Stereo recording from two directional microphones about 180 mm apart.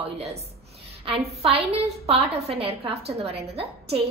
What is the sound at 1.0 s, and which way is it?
A woman's voice, 30° right (ahead or behind).